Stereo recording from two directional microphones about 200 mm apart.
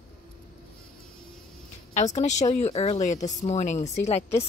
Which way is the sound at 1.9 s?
35° left (ahead or behind).